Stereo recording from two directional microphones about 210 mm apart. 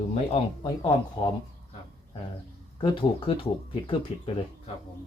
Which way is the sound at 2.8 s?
25° left (ahead or behind).